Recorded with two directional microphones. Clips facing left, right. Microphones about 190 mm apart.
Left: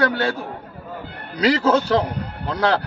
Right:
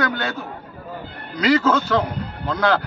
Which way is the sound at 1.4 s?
35° left (ahead or behind).